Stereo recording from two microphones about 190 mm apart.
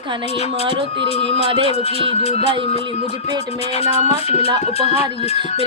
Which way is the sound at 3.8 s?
35° left (ahead or behind).